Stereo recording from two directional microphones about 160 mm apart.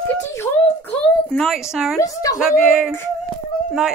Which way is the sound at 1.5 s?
5° right (ahead or behind).